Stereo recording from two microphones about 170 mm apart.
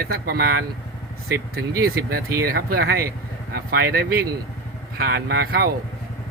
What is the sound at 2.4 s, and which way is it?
Speech, 65° right (ahead or behind).